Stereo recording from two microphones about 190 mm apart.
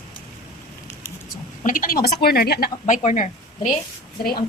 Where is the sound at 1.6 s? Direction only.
45° left (ahead or behind).